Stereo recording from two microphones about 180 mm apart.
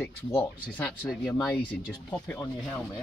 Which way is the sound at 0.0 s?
15° left (ahead or behind).